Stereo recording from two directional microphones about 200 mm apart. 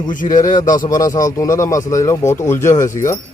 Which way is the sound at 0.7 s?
20° left (ahead or behind).